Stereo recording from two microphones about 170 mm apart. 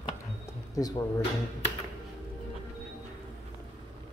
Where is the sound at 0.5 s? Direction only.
20° left (ahead or behind).